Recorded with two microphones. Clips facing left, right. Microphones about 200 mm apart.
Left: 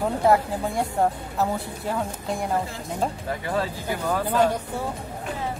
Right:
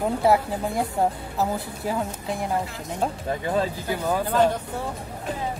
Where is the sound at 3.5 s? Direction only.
15° right (ahead or behind).